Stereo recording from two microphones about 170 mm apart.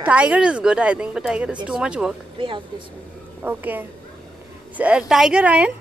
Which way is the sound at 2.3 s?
30° right (ahead or behind).